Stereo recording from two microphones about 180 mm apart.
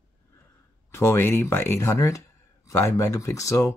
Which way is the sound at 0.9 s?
15° left (ahead or behind).